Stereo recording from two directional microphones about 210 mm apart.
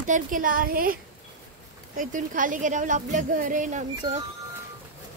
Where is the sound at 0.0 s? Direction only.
40° right (ahead or behind).